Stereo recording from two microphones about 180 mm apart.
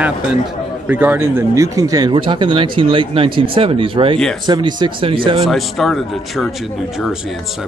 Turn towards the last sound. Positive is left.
turn(degrees=0)  # may be behind; listen again after turning